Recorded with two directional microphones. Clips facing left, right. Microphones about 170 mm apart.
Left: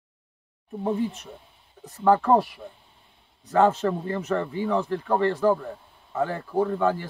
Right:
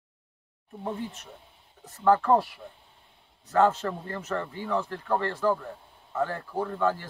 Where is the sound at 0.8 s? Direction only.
15° left (ahead or behind).